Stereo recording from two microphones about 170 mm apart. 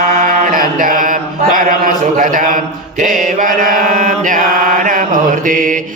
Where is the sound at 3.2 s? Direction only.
50° right (ahead or behind).